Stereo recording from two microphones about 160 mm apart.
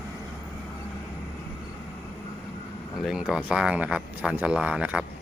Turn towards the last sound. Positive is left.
turn(degrees=-5)  # may be behind; listen again after turning